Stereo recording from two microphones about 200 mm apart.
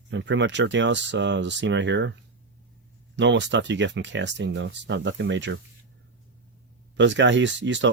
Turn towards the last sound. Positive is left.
turn(degrees=-65)  # may be behind; listen again after turning